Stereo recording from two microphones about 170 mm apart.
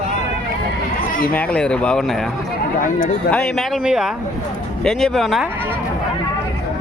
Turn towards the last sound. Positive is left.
turn(degrees=0)  # may be behind; listen again after turning